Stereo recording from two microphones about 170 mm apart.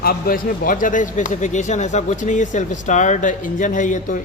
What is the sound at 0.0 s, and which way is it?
A man's voice, 60° left (ahead or behind).